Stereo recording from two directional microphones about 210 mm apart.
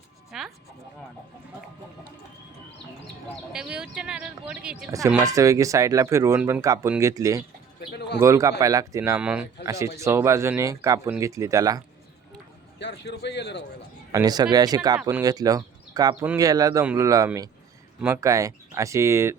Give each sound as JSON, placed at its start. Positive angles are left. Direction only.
{"t": 0.3, "sound": "music", "side_deg": 0}
{"t": 3.5, "sound": "speech", "side_deg": -5}
{"t": 4.9, "sound": "speech", "side_deg": -15}
{"t": 7.8, "sound": "a sound", "side_deg": 50}
{"t": 8.2, "sound": "speech", "side_deg": -15}
{"t": 12.8, "sound": "a man's voice", "side_deg": 55}
{"t": 14.1, "sound": "speech", "side_deg": -15}